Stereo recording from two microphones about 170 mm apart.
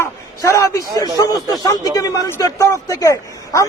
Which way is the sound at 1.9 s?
20° left (ahead or behind).